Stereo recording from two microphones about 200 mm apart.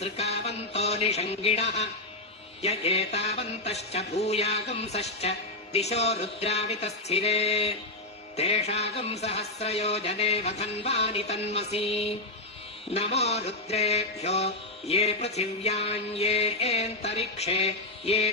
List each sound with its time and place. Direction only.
0.0 s music: 30° left (ahead or behind)